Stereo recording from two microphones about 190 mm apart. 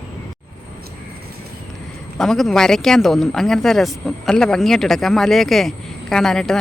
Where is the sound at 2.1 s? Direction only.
Centre (ahead or behind).